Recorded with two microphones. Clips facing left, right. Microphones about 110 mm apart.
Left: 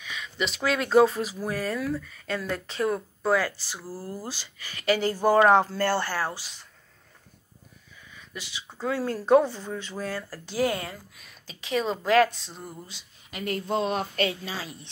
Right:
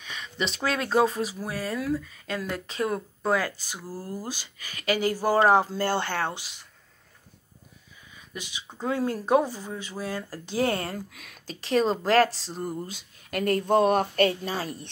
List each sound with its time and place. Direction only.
0.0 s a sound: 35° right (ahead or behind)
0.9 s speech: 15° right (ahead or behind)
8.3 s speech: 15° right (ahead or behind)
10.7 s speech: 35° right (ahead or behind)
12.8 s a woman's voice: 50° right (ahead or behind)